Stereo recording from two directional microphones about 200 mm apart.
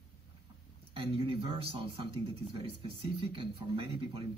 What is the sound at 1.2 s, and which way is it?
Speech, 25° right (ahead or behind).